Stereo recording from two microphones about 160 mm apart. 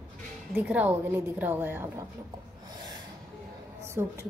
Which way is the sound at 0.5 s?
10° right (ahead or behind).